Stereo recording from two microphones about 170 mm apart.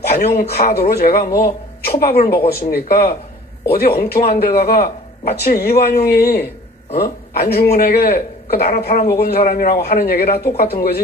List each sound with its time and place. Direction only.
0.1 s speech: 65° left (ahead or behind)